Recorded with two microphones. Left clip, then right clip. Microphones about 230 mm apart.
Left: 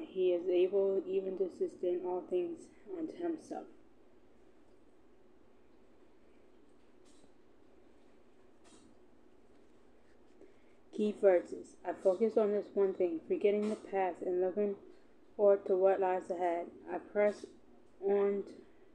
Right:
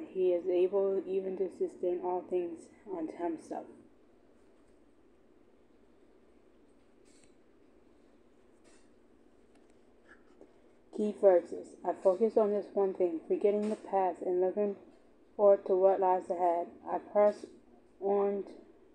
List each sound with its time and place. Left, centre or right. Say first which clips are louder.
0.2 s a woman's voice: right 2 dB; centre
10.9 s a woman's voice: right 3 dB; centre